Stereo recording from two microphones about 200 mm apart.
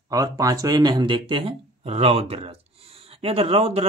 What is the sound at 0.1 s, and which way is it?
Speech, 15° right (ahead or behind).